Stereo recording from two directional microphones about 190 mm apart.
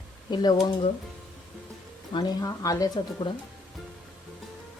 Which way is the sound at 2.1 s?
20° left (ahead or behind).